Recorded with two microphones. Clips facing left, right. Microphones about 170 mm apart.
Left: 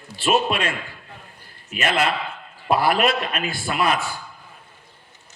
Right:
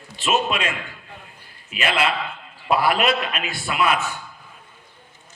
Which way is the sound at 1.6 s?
45° left (ahead or behind).